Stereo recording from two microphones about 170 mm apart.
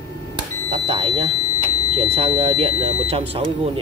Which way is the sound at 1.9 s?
35° right (ahead or behind).